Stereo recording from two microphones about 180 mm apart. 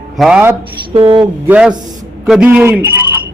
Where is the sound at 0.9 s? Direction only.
30° right (ahead or behind).